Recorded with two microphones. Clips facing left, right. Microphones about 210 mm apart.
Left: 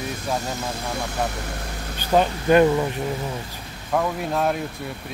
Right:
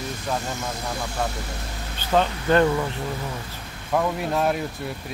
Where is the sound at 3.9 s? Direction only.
Centre (ahead or behind).